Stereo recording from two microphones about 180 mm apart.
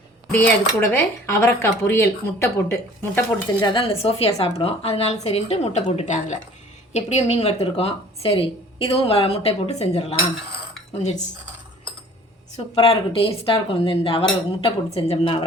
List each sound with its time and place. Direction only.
0.3 s speech: 10° left (ahead or behind)
3.7 s speech: 30° left (ahead or behind)
12.5 s speech: 30° left (ahead or behind)